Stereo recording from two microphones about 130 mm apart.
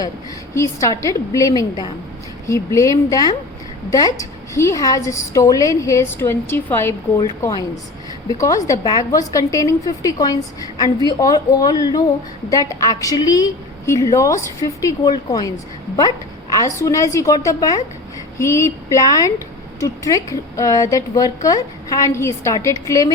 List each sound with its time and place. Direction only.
0.5 s a woman's voice: 25° left (ahead or behind)
8.4 s a woman's voice: 25° left (ahead or behind)